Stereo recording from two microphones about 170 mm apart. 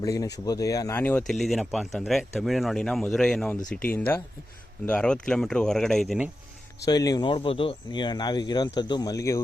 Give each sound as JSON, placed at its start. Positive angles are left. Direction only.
{"t": 0.0, "sound": "speech", "side_deg": 20}
{"t": 6.8, "sound": "speech", "side_deg": 20}